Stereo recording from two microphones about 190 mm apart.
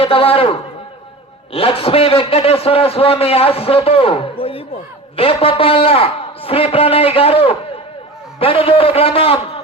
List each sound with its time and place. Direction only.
0.0 s a man's voice: 30° left (ahead or behind)
1.5 s a man's voice: 30° left (ahead or behind)